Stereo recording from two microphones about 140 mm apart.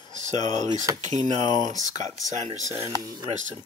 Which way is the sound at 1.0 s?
60° right (ahead or behind).